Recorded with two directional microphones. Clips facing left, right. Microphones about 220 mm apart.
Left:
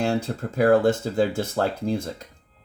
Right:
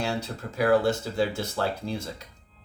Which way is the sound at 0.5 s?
50° left (ahead or behind).